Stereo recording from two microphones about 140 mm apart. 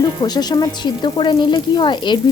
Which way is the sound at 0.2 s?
30° left (ahead or behind).